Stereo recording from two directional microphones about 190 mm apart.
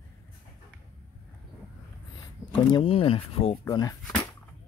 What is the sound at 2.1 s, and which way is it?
Speech, 25° left (ahead or behind).